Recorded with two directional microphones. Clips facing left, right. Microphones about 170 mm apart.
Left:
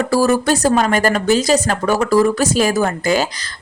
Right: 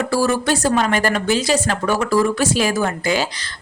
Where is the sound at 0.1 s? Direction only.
40° left (ahead or behind).